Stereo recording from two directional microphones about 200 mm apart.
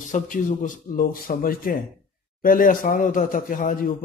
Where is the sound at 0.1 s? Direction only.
40° left (ahead or behind).